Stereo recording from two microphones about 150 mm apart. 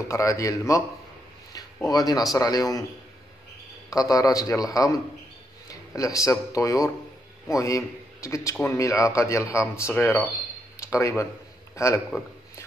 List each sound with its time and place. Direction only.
0.1 s a man's voice: 20° left (ahead or behind)
1.9 s a man's voice: 25° left (ahead or behind)
3.9 s a man's voice: 25° left (ahead or behind)
5.7 s a sound: 20° left (ahead or behind)
6.5 s a man's voice: 20° left (ahead or behind)